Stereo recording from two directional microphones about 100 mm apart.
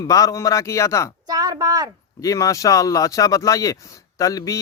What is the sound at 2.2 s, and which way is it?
Speech, 35° left (ahead or behind).